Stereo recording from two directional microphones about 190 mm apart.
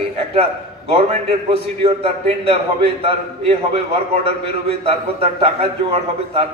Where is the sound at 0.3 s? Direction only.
30° right (ahead or behind).